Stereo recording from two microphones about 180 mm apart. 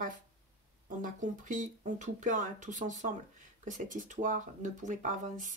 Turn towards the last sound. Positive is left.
turn(degrees=-45)  # may be behind; listen again after turning